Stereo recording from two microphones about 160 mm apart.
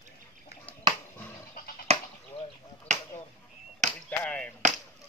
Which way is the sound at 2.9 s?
45° right (ahead or behind).